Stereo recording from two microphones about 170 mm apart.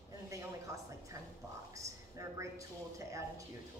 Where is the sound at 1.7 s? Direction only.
20° right (ahead or behind).